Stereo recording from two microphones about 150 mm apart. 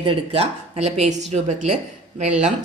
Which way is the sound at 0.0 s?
40° right (ahead or behind).